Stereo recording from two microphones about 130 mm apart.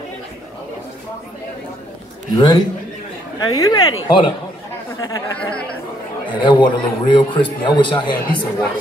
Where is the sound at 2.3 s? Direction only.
30° left (ahead or behind).